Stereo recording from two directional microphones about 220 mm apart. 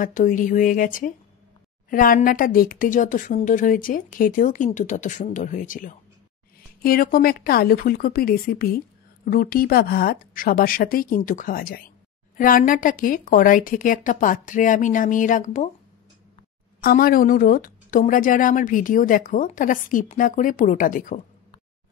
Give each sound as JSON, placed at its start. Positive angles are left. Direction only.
{"t": 0.0, "sound": "a woman's voice", "side_deg": 35}
{"t": 16.8, "sound": "a woman's voice", "side_deg": 40}